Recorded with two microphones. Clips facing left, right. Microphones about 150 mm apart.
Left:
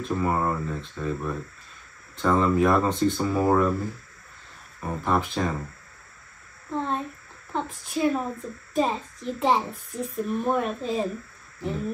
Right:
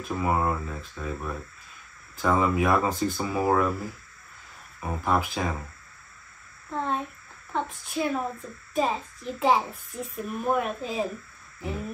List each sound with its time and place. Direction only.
0.0 s a child's voice: 5° right (ahead or behind)
4.7 s a child's voice: 5° right (ahead or behind)
6.7 s a sound: centre (ahead or behind)
7.5 s a child's voice: centre (ahead or behind)